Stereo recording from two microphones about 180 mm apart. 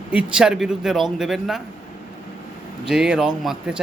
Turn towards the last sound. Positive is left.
turn(degrees=-5)  # may be behind; listen again after turning